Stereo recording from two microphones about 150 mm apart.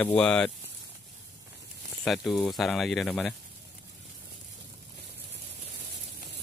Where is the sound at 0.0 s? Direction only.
10° left (ahead or behind).